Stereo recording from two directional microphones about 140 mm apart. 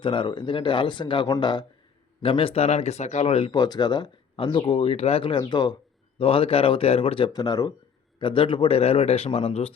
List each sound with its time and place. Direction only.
0.0 s speech: 35° left (ahead or behind)
6.1 s speech: 40° left (ahead or behind)
7.3 s a man's voice: 30° left (ahead or behind); by 9.7 s 45° left (ahead or behind)